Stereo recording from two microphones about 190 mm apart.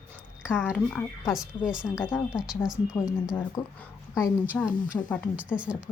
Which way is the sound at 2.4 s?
Centre (ahead or behind).